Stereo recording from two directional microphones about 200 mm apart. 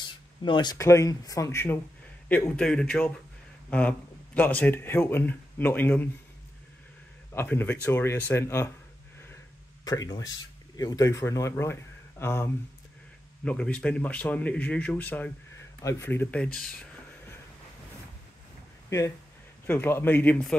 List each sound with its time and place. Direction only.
0.4 s speech: 25° left (ahead or behind)
7.3 s speech: 10° left (ahead or behind)
9.8 s speech: 20° left (ahead or behind)
18.9 s speech: 15° left (ahead or behind)